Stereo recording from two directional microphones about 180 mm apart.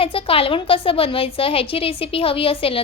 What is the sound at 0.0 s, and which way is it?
A woman's voice, 30° left (ahead or behind).